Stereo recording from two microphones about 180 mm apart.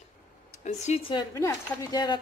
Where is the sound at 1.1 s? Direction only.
20° left (ahead or behind).